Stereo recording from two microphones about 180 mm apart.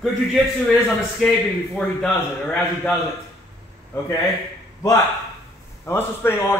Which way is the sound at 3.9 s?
10° left (ahead or behind).